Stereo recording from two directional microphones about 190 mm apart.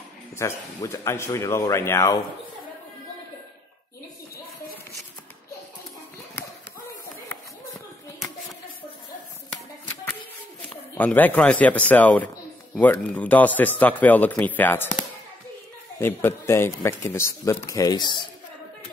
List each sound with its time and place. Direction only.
0.4 s a man's voice: 15° left (ahead or behind)
11.0 s a man's voice: 10° left (ahead or behind)
16.0 s a man's voice: 10° left (ahead or behind)